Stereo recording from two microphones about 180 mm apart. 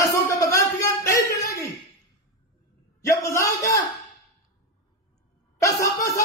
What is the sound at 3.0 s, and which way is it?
Speech, 15° left (ahead or behind).